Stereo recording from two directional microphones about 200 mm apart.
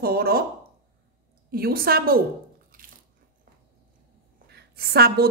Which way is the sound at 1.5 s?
50° right (ahead or behind).